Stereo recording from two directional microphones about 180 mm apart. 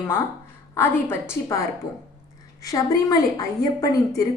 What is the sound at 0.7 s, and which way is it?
Speech, 15° left (ahead or behind).